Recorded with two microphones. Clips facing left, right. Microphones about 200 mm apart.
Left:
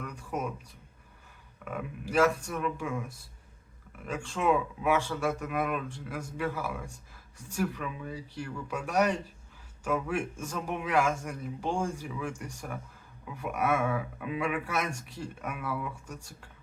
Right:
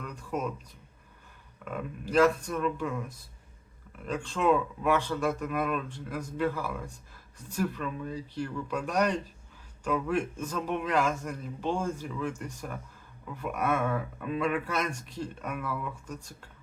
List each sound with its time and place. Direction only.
0.3 s speech: 10° left (ahead or behind)
1.6 s speech: 10° left (ahead or behind)